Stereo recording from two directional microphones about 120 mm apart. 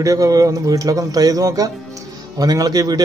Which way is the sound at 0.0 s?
30° right (ahead or behind).